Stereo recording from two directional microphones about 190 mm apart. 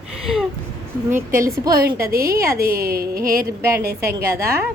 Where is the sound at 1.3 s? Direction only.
45° right (ahead or behind).